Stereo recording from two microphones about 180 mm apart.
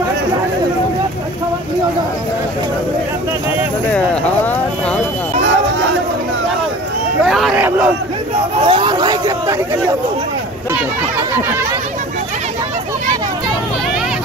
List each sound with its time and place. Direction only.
7.2 s hubbub: centre (ahead or behind)
7.5 s crowd: 10° right (ahead or behind)
8.6 s hubbub: 30° right (ahead or behind)